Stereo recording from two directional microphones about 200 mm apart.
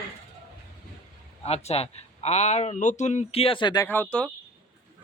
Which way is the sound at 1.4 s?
30° left (ahead or behind).